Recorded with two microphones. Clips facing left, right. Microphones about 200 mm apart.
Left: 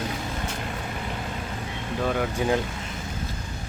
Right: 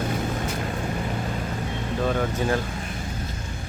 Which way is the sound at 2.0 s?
10° left (ahead or behind).